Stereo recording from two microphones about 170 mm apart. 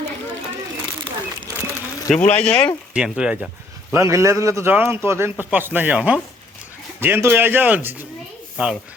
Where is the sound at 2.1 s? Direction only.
10° left (ahead or behind).